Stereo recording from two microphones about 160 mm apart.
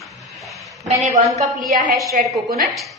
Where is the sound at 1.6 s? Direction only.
55° right (ahead or behind).